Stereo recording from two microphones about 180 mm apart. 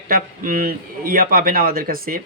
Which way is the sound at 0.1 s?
50° right (ahead or behind).